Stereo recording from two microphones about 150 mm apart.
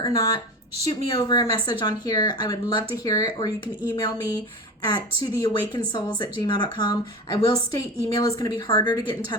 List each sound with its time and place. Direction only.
0.0 s a woman's voice: 25° left (ahead or behind)
4.9 s a woman's voice: 25° left (ahead or behind)